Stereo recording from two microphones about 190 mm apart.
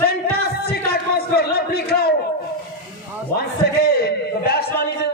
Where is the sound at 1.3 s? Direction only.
55° left (ahead or behind).